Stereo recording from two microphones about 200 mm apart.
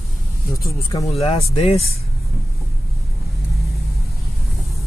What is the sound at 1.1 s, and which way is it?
Speech, 30° left (ahead or behind).